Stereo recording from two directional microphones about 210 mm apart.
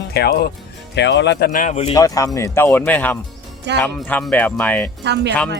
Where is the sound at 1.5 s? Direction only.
40° left (ahead or behind).